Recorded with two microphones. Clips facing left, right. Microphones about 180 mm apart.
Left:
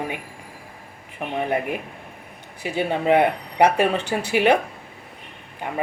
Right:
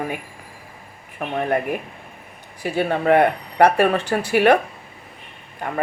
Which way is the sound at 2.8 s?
10° left (ahead or behind).